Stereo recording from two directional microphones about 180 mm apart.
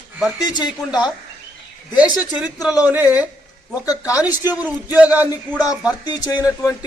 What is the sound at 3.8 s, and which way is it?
Speech, 20° left (ahead or behind).